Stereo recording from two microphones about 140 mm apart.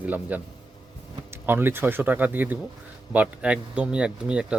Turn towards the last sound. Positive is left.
turn(degrees=-5)  # may be behind; listen again after turning